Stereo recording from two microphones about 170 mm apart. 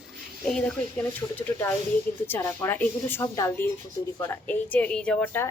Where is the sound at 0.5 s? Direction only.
5° left (ahead or behind).